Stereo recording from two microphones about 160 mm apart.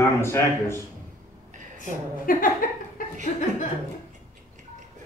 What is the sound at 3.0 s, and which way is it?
Chuckle, 60° left (ahead or behind).